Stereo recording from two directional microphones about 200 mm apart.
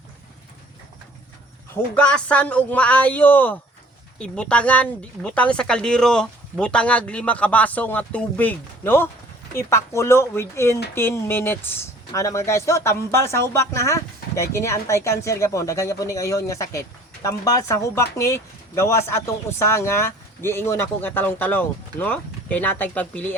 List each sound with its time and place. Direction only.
1.7 s speech: 5° left (ahead or behind)